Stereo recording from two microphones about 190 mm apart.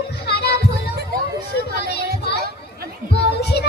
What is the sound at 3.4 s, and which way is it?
Music, 60° left (ahead or behind).